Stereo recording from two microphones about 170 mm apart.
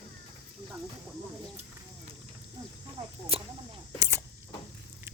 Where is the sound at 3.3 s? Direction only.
35° right (ahead or behind).